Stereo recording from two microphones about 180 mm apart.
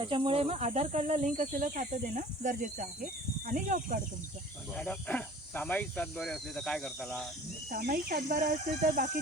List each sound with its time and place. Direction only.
0.0 s speech: 30° right (ahead or behind); by 4.0 s 50° right (ahead or behind)
4.7 s speech: 5° left (ahead or behind)
7.7 s speech: 55° right (ahead or behind)